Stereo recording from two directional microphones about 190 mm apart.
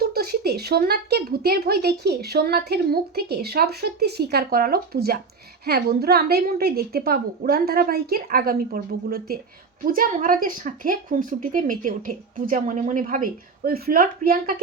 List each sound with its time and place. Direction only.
0.0 s speech: 55° right (ahead or behind)